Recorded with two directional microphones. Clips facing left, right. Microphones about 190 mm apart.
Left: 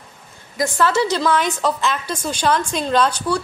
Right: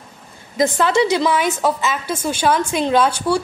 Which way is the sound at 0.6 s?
15° right (ahead or behind).